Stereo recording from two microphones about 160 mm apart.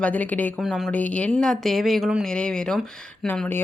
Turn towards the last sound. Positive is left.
turn(degrees=10)  # may be behind; listen again after turning